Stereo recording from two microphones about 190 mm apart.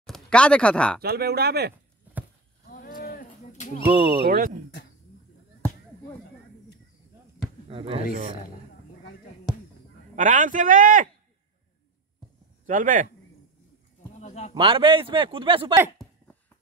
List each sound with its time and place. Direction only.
0.0 s speech: 5° left (ahead or behind)
1.0 s speech: 55° right (ahead or behind)
2.7 s a sound: 50° left (ahead or behind)
3.9 s a man's voice: 25° right (ahead or behind)
4.2 s speech: 55° right (ahead or behind)
7.7 s speech: 30° right (ahead or behind)
10.1 s speech: 40° right (ahead or behind)
12.6 s speech: 45° right (ahead or behind)
14.1 s a sound: 35° left (ahead or behind)
14.5 s a man's voice: 25° right (ahead or behind)